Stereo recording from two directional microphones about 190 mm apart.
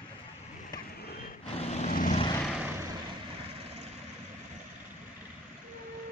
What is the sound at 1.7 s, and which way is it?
Vehicle, 35° left (ahead or behind).